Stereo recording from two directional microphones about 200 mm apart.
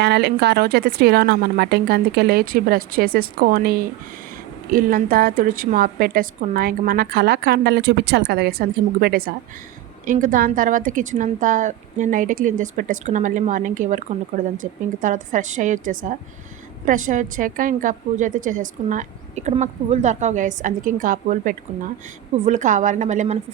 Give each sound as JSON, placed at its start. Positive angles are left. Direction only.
{"t": 0.0, "sound": "a woman's voice", "side_deg": -55}